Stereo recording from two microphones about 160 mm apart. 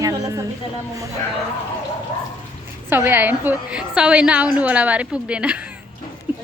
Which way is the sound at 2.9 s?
15° right (ahead or behind).